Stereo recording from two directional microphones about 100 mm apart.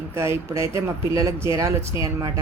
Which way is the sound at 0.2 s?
30° right (ahead or behind).